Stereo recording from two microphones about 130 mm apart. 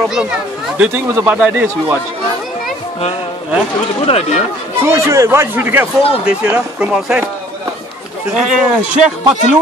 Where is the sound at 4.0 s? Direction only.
50° left (ahead or behind).